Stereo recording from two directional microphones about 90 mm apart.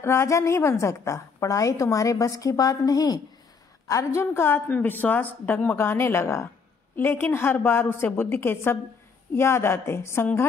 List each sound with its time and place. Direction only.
0.0 s a woman's voice: 30° left (ahead or behind)